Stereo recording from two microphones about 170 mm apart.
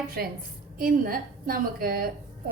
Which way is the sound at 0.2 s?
65° right (ahead or behind).